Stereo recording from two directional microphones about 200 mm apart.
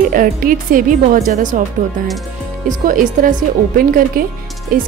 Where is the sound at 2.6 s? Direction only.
40° right (ahead or behind).